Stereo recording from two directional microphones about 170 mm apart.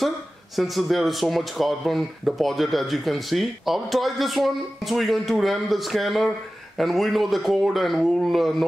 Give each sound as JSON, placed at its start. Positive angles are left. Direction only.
{"t": 0.6, "sound": "speech", "side_deg": 0}